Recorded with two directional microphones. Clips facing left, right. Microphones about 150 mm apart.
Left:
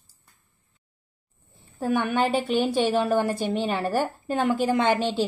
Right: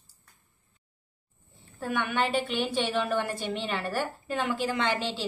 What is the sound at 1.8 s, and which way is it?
A woman's voice, 40° left (ahead or behind).